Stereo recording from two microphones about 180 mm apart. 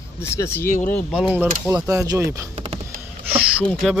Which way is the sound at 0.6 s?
45° left (ahead or behind).